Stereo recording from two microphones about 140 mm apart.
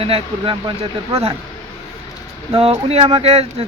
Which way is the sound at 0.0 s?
45° right (ahead or behind).